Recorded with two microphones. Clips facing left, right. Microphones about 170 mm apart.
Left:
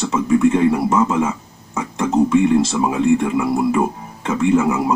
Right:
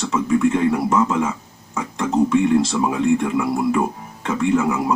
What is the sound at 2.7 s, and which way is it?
Speech, 20° left (ahead or behind).